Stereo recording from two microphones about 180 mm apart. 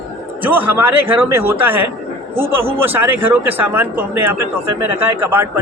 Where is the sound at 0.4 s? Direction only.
10° right (ahead or behind).